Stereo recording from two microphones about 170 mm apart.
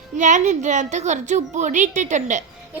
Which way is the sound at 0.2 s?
45° right (ahead or behind).